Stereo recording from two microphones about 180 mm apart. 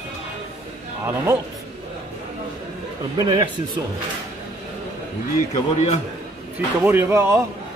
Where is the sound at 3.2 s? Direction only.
25° right (ahead or behind).